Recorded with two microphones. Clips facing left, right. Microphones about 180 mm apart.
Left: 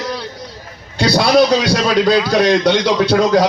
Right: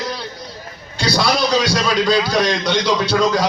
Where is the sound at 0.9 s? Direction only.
60° left (ahead or behind).